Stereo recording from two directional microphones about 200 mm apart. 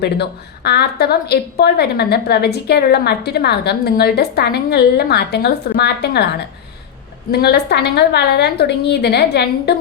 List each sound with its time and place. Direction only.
0.0 s a woman's voice: 55° left (ahead or behind)
7.3 s a woman's voice: 55° left (ahead or behind)